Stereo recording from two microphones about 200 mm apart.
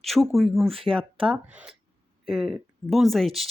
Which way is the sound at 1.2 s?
5° right (ahead or behind).